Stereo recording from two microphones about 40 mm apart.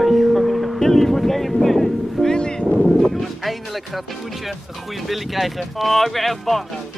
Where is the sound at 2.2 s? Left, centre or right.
Left.